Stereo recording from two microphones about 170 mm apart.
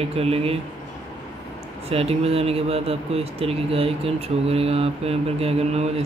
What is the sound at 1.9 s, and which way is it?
Speech, 35° right (ahead or behind).